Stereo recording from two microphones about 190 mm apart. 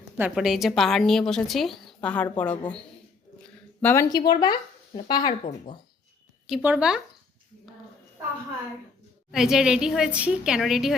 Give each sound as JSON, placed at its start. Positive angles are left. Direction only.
{"t": 0.0, "sound": "a woman's voice", "side_deg": -5}
{"t": 4.1, "sound": "speech", "side_deg": 25}
{"t": 6.5, "sound": "a woman's voice", "side_deg": -5}
{"t": 9.3, "sound": "a woman's voice", "side_deg": 0}